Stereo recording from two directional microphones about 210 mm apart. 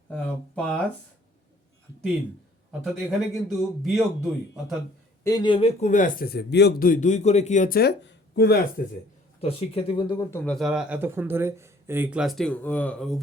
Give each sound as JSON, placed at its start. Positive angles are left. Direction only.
{"t": 0.1, "sound": "speech", "side_deg": 5}
{"t": 2.8, "sound": "speech", "side_deg": 0}
{"t": 5.2, "sound": "speech", "side_deg": 20}
{"t": 9.4, "sound": "speech", "side_deg": 30}